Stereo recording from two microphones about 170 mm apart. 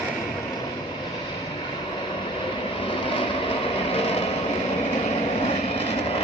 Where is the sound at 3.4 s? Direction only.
35° left (ahead or behind).